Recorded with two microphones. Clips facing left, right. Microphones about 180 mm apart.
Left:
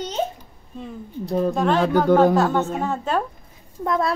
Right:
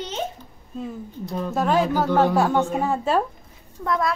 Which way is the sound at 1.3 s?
35° left (ahead or behind).